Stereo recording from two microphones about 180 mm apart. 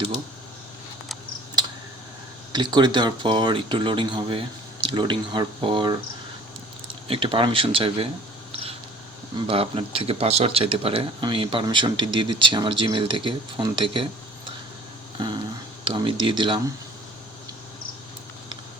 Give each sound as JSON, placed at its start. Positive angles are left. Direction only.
{"t": 2.5, "sound": "speech", "side_deg": -25}
{"t": 9.5, "sound": "speech", "side_deg": -30}
{"t": 15.8, "sound": "speech", "side_deg": -25}